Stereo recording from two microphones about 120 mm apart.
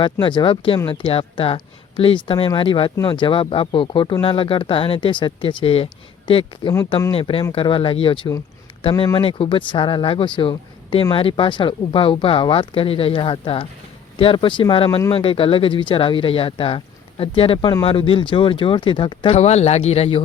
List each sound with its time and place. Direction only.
0.0 s speech: 40° left (ahead or behind)
19.3 s speech: 65° left (ahead or behind)